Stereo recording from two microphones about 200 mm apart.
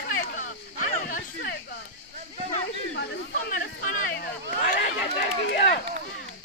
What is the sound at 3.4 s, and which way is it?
Chatter, 45° left (ahead or behind).